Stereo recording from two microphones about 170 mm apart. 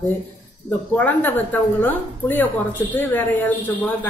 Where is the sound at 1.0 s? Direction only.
10° left (ahead or behind).